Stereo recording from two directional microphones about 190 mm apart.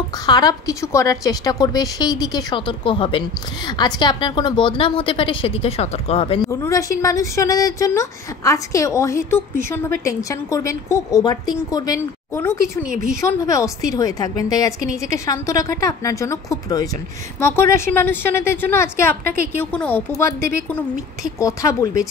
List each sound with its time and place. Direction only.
0.3 s a woman's voice: 20° left (ahead or behind)
6.5 s a woman's voice: 15° left (ahead or behind)